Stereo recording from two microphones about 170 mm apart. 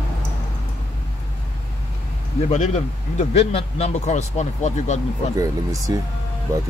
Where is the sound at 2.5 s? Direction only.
40° left (ahead or behind).